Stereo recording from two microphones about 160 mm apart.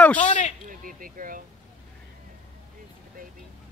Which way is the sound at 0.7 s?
60° right (ahead or behind).